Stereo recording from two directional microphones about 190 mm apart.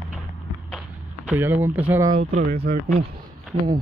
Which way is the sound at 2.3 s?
35° right (ahead or behind).